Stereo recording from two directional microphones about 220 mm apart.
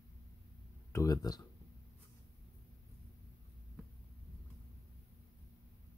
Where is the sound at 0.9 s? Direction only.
15° left (ahead or behind).